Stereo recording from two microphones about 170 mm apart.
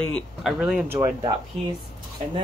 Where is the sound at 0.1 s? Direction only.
Centre (ahead or behind).